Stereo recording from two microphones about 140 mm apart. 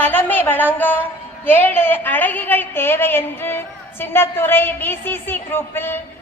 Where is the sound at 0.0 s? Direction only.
15° left (ahead or behind).